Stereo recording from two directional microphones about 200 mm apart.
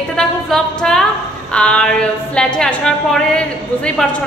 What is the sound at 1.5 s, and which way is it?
A woman's voice, 5° left (ahead or behind).